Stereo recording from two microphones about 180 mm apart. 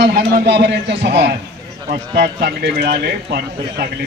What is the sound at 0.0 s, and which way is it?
A man's voice, 60° right (ahead or behind).